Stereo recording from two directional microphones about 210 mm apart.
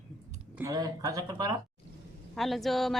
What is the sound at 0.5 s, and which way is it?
Speech, 15° right (ahead or behind).